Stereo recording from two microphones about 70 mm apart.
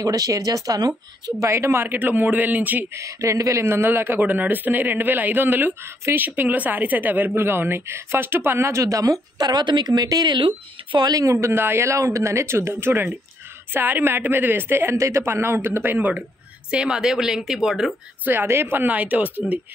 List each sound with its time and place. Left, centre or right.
0.0 s speech: right
1.4 s speech: right
2.9 s a woman's voice: right
11.4 s a woman's voice: right
16.7 s a woman's voice: centre
18.2 s speech: right